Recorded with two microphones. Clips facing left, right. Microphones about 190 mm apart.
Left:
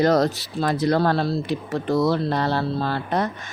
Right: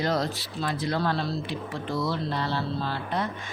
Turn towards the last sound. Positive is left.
turn(degrees=40)  # may be behind; listen again after turning